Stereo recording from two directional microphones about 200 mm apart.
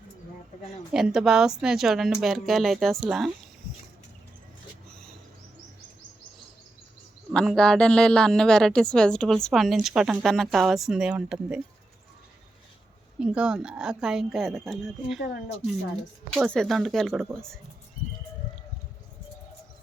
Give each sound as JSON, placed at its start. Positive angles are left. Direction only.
{"t": 0.9, "sound": "a woman's voice", "side_deg": 0}
{"t": 7.3, "sound": "a woman's voice", "side_deg": 5}
{"t": 13.1, "sound": "a woman's voice", "side_deg": -5}
{"t": 16.3, "sound": "a woman's voice", "side_deg": 0}